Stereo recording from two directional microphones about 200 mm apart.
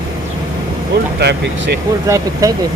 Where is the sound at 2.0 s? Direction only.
15° right (ahead or behind).